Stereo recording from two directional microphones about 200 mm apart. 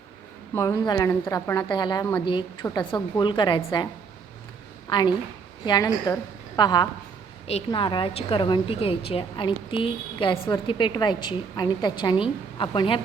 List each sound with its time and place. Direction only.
0.5 s a woman's voice: 15° left (ahead or behind)
4.9 s a woman's voice: 25° left (ahead or behind)